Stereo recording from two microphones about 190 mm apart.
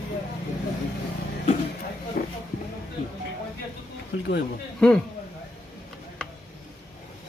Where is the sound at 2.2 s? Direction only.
45° left (ahead or behind).